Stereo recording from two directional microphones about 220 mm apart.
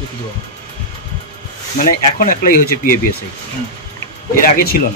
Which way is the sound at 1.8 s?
40° left (ahead or behind).